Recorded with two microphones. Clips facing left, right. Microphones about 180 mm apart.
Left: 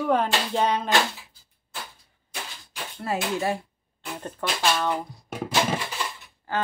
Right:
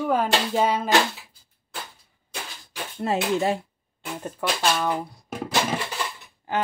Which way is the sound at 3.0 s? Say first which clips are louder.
Right 4 dB; 20° right (ahead or behind).